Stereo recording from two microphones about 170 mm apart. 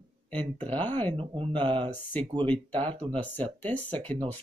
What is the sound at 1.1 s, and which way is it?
Speech, 30° right (ahead or behind).